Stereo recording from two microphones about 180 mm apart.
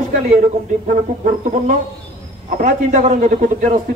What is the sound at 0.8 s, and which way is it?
A man's voice, 50° right (ahead or behind).